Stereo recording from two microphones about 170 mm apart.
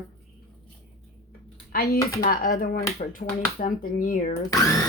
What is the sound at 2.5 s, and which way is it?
A woman's voice, 55° left (ahead or behind).